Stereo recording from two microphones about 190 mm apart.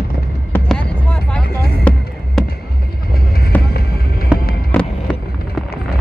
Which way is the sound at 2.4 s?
Centre (ahead or behind).